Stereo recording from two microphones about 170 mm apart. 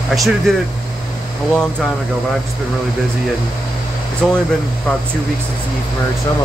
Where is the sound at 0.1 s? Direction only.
Centre (ahead or behind).